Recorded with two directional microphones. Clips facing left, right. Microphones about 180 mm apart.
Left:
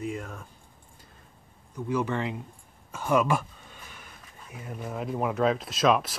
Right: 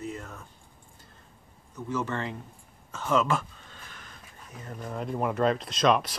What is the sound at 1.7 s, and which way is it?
Speech, 15° left (ahead or behind).